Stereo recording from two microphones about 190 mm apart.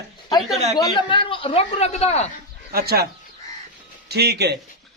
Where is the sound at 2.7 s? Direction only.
55° right (ahead or behind).